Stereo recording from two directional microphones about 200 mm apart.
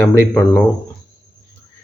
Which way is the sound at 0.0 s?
10° left (ahead or behind).